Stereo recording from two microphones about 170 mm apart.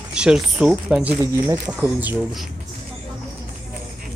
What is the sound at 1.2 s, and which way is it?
Speech, 20° right (ahead or behind).